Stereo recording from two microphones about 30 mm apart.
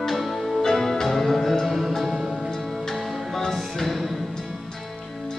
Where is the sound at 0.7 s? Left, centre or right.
Centre.